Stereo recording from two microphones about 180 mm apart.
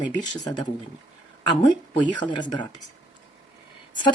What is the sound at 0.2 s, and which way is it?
Speech, 25° left (ahead or behind).